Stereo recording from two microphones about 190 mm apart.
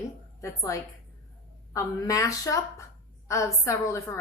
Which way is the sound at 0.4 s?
15° left (ahead or behind).